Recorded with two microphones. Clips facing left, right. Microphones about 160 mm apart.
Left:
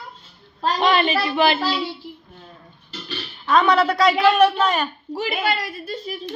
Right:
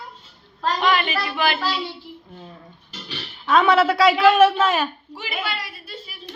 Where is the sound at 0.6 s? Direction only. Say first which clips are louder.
Left 2 dB; 15° left (ahead or behind).